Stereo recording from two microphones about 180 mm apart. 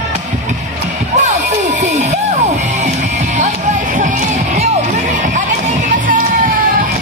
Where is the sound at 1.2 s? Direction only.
40° right (ahead or behind).